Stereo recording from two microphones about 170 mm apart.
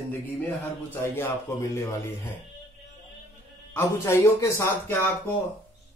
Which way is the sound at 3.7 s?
15° left (ahead or behind).